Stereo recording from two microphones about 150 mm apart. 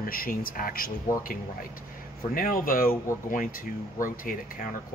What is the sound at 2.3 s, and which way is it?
Speech, 70° left (ahead or behind).